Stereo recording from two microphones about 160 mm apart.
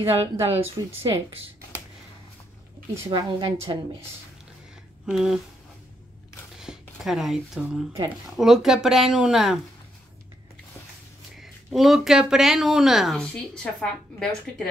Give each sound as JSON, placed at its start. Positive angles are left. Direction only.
{"t": 0.0, "sound": "speech", "side_deg": -35}
{"t": 0.8, "sound": "a woman's voice", "side_deg": -25}
{"t": 3.1, "sound": "a woman's voice", "side_deg": -30}
{"t": 5.1, "sound": "speech", "side_deg": 0}
{"t": 6.6, "sound": "speech", "side_deg": 0}
{"t": 11.3, "sound": "speech", "side_deg": 0}